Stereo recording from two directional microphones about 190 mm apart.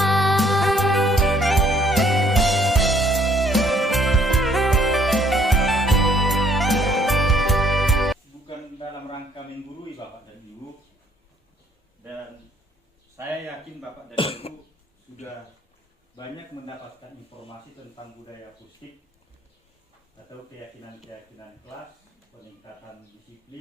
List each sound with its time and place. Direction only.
0.0 s music: centre (ahead or behind)
14.2 s cough: 30° left (ahead or behind)